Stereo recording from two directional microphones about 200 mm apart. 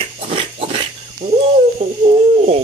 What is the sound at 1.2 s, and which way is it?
Owl, 25° right (ahead or behind).